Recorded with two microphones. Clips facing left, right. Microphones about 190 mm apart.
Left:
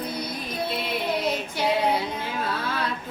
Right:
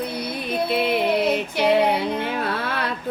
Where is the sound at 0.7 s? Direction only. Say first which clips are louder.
Right 8 dB; 65° right (ahead or behind).